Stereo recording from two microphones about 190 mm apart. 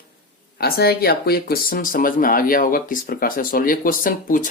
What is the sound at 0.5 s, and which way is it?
Speech, 55° left (ahead or behind).